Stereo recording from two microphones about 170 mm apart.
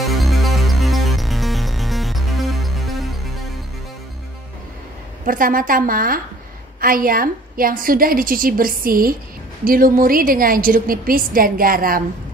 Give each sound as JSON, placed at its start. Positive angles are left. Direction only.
{"t": 0.0, "sound": "music", "side_deg": 0}
{"t": 5.2, "sound": "a woman's voice", "side_deg": -55}